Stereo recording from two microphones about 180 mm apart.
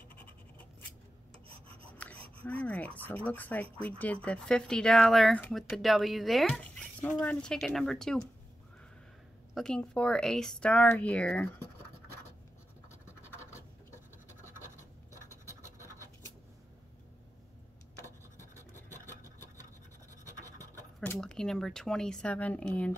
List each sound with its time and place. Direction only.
0.1 s scratch: 10° left (ahead or behind)
2.0 s a sound: 5° left (ahead or behind)
2.4 s speech: 10° left (ahead or behind)
9.5 s speech: 5° left (ahead or behind)
15.2 s scratch: 15° right (ahead or behind)
20.2 s scratch: 20° right (ahead or behind)
21.0 s speech: 5° left (ahead or behind)